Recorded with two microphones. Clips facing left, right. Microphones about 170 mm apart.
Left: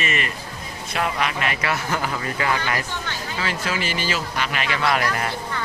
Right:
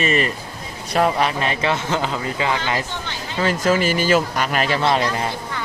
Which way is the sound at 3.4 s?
45° right (ahead or behind).